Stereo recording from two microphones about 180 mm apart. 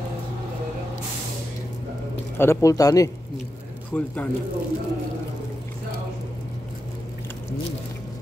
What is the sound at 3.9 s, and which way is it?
Speech, 10° left (ahead or behind).